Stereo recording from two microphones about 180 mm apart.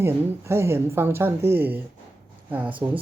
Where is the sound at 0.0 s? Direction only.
15° right (ahead or behind).